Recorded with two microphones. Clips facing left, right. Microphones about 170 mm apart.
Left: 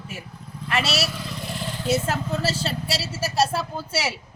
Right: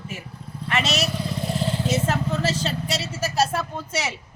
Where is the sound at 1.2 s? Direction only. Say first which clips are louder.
Right 6 dB; 30° right (ahead or behind).